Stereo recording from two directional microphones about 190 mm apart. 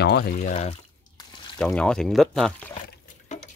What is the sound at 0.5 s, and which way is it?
Speech, 35° left (ahead or behind).